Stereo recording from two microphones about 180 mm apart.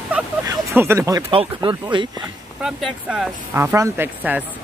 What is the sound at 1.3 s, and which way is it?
Speech, 30° right (ahead or behind).